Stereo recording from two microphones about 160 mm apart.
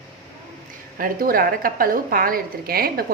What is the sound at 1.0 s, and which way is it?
A woman's voice, 65° right (ahead or behind).